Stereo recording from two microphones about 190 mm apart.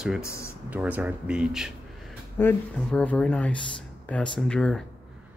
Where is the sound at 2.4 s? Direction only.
10° left (ahead or behind).